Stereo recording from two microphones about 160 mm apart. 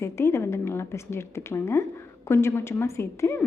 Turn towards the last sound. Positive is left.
turn(degrees=15)  # may be behind; listen again after turning